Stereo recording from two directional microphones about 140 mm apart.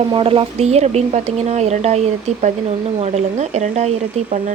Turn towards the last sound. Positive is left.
turn(degrees=-70)  # may be behind; listen again after turning